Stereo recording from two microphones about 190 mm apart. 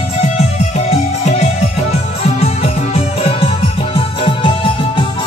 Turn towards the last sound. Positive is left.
turn(degrees=35)  # may be behind; listen again after turning